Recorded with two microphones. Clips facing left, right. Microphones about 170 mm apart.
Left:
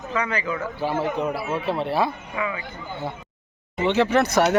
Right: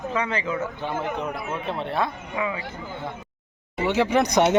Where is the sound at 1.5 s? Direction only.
5° left (ahead or behind).